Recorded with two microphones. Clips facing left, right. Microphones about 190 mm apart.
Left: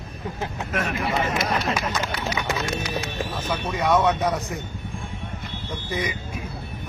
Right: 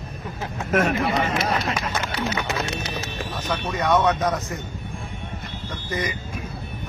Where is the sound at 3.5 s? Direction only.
5° left (ahead or behind).